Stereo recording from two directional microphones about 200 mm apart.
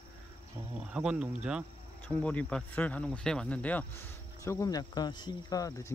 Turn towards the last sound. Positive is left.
turn(degrees=15)  # may be behind; listen again after turning